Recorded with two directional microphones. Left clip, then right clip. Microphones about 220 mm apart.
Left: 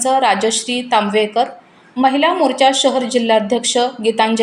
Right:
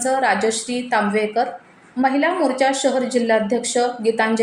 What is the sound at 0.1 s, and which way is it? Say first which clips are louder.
A woman's voice: left 4 dB; 45° left (ahead or behind).